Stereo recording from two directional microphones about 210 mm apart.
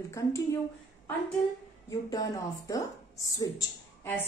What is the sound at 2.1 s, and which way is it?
A woman's voice, 15° left (ahead or behind).